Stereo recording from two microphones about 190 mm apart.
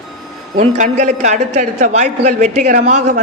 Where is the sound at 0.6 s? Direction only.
40° right (ahead or behind).